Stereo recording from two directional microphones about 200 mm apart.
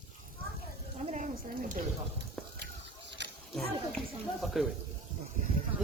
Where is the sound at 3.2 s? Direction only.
60° right (ahead or behind).